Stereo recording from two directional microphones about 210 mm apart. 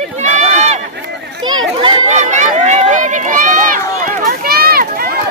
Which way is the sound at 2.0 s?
35° right (ahead or behind).